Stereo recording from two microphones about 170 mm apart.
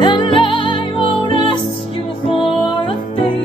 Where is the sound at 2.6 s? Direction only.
25° left (ahead or behind).